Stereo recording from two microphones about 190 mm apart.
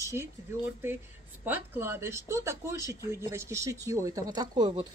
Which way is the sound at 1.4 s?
10° right (ahead or behind).